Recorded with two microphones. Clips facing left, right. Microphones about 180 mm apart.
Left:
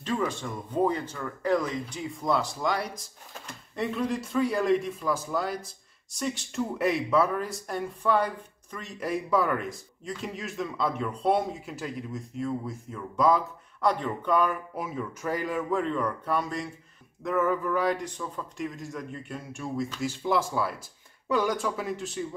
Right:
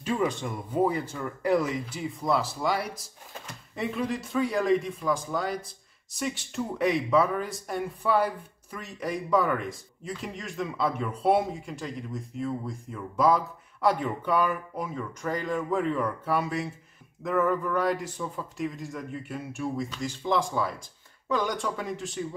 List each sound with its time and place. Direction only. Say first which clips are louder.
0.0 s speech: right 2 dB; 15° right (ahead or behind)
0.7 s speech: even; 5° right (ahead or behind)